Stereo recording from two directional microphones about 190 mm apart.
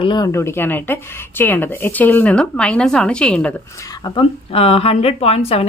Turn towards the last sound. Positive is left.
turn(degrees=30)  # may be behind; listen again after turning